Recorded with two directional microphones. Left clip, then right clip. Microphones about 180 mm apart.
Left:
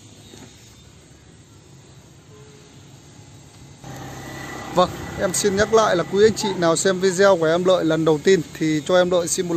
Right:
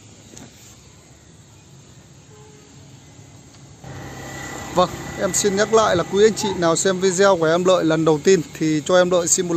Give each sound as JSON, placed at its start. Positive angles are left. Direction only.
{"t": 4.4, "sound": "vehicle", "side_deg": -60}
{"t": 5.2, "sound": "speech", "side_deg": -5}